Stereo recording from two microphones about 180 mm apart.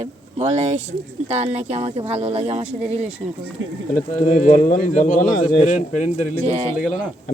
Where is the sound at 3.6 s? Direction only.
90° right.